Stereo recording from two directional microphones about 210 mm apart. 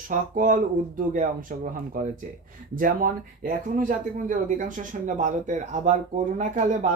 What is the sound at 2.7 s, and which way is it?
Speech, 40° right (ahead or behind).